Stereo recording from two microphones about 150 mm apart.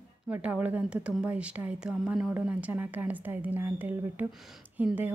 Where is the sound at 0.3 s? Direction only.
10° right (ahead or behind).